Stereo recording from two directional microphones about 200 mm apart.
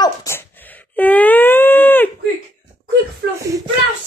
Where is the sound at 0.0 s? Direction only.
15° left (ahead or behind).